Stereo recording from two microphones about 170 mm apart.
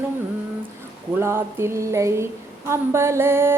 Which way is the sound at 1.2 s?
15° right (ahead or behind).